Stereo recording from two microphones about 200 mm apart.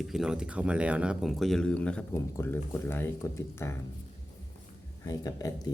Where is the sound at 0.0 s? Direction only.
Centre (ahead or behind).